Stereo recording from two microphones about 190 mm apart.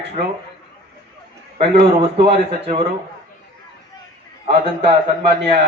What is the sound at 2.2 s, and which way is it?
Speech, 30° right (ahead or behind).